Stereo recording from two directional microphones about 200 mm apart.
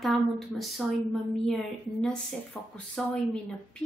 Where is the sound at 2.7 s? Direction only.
5° left (ahead or behind).